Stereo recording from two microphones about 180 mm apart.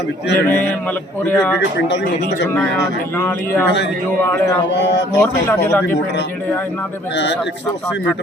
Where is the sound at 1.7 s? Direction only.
75° left (ahead or behind).